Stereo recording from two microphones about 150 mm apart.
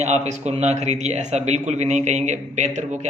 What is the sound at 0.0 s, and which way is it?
Speech, 50° right (ahead or behind).